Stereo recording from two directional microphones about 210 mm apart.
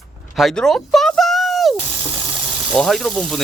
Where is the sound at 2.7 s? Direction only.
Centre (ahead or behind).